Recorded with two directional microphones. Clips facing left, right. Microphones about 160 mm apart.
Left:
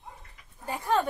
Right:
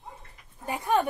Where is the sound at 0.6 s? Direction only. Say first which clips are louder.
Right 1 dB; 15° right (ahead or behind).